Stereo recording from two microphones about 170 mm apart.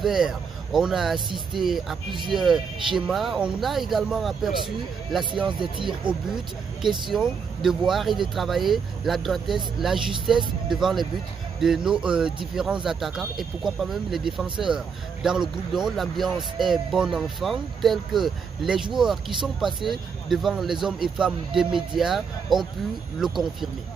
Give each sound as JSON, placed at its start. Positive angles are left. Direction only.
{"t": 0.0, "sound": "speech", "side_deg": -5}
{"t": 5.6, "sound": "speech", "side_deg": -30}
{"t": 6.0, "sound": "speech", "side_deg": -5}